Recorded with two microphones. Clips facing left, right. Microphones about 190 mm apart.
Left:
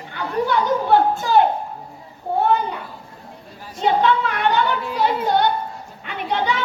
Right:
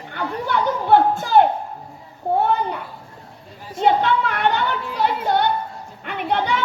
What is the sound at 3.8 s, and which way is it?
Speech, 55° right (ahead or behind).